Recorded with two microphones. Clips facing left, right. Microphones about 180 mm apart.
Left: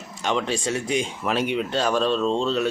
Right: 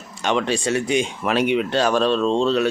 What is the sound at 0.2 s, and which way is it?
Speech, 70° right (ahead or behind).